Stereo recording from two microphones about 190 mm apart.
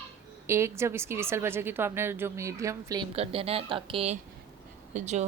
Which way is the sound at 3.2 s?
30° right (ahead or behind).